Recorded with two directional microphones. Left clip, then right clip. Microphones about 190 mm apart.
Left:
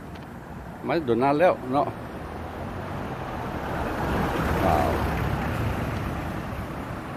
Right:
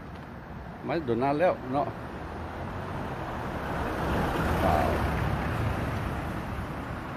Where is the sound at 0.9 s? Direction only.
15° left (ahead or behind).